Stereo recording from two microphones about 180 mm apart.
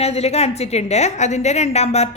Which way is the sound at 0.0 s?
35° left (ahead or behind).